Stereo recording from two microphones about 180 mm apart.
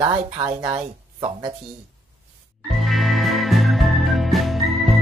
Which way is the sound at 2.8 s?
Centre (ahead or behind).